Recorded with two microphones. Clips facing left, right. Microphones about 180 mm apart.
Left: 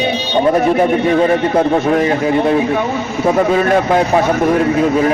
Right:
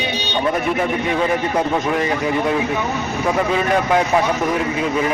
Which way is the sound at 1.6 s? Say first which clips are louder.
Left 7 dB; 30° left (ahead or behind).